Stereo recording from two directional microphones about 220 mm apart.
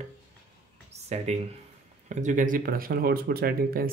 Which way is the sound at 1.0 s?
30° right (ahead or behind).